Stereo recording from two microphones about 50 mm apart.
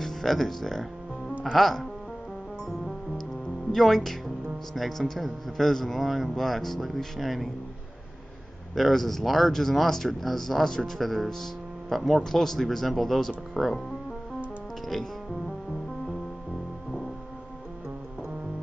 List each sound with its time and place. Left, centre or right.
0.0 s music: centre
1.4 s speech: centre
3.7 s speech: centre
8.7 s speech: centre
14.9 s music: centre